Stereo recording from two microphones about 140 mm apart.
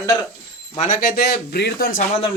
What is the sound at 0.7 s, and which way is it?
Speech, 65° left (ahead or behind).